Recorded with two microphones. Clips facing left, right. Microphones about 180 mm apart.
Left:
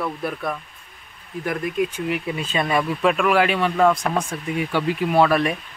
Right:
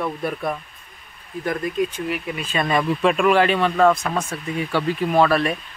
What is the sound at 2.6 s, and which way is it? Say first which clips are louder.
Speech: right 1 dB; 10° left (ahead or behind).